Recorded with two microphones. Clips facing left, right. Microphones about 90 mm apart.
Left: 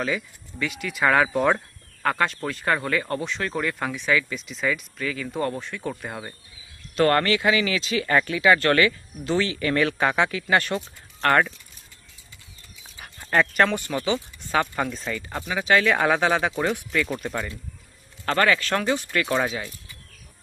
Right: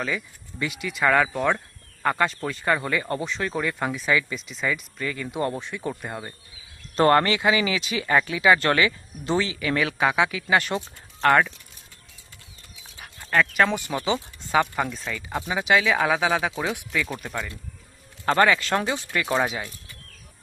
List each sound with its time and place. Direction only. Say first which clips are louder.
0.6 s speech: even; centre (ahead or behind)
2.0 s speech: even; centre (ahead or behind)
5.4 s speech: even; 20° right (ahead or behind)
5.7 s speech: right 1 dB; 5° right (ahead or behind)
6.9 s speech: right 1 dB; 25° right (ahead or behind)
11.3 s speech: right 1 dB; 5° right (ahead or behind)
13.0 s dog: left 1 dB; 5° left (ahead or behind)
13.7 s speech: even; 15° right (ahead or behind)
14.6 s speech: right 1 dB; centre (ahead or behind)
15.3 s speech: even; 15° right (ahead or behind)
15.8 s speech: left 1 dB; centre (ahead or behind)
18.3 s speech: right 2 dB; 20° right (ahead or behind)